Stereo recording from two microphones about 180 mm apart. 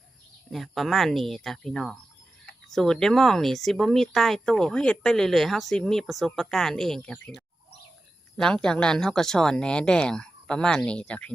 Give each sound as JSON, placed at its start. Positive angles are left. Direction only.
{"t": 0.5, "sound": "speech", "side_deg": 0}
{"t": 8.4, "sound": "speech", "side_deg": 5}